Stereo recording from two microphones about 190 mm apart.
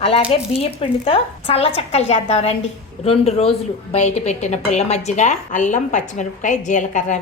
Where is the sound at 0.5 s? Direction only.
30° left (ahead or behind).